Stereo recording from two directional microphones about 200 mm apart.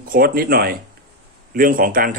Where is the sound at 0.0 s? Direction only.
45° right (ahead or behind).